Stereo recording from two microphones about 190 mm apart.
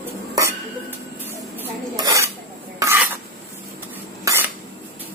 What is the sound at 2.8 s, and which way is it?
Filing, 15° right (ahead or behind).